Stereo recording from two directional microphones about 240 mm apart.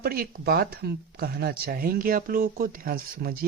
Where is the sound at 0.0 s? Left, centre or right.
Right.